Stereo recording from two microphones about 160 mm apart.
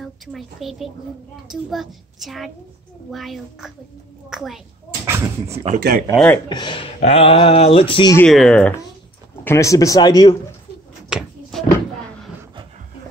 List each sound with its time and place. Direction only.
0.0 s a woman's voice: centre (ahead or behind)
5.0 s speech: 15° right (ahead or behind)
5.8 s speech: 65° right (ahead or behind)
6.1 s speech: 10° left (ahead or behind)
6.5 s mantra: 30° left (ahead or behind)
8.3 s a child's voice: 5° left (ahead or behind)
9.4 s speech: 15° left (ahead or behind)
11.1 s a sound: 5° right (ahead or behind)